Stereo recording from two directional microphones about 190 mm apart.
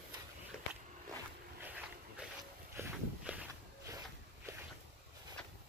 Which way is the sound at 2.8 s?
10° right (ahead or behind).